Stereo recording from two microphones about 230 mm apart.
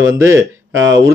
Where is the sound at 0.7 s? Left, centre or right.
Right.